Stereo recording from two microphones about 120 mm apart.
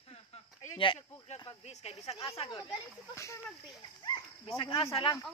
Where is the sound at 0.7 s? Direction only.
45° left (ahead or behind).